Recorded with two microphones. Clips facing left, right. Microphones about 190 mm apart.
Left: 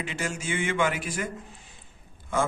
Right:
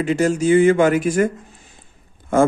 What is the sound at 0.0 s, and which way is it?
A man's voice, 40° right (ahead or behind).